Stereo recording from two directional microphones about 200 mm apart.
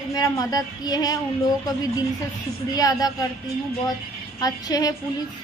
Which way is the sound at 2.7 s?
20° left (ahead or behind).